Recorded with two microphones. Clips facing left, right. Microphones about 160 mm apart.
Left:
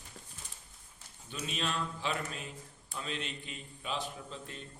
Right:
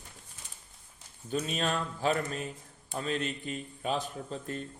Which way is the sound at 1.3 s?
45° right (ahead or behind).